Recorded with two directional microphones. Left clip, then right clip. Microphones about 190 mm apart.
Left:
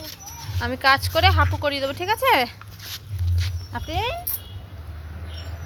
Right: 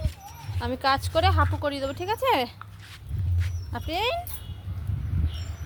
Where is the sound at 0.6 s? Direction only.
20° right (ahead or behind).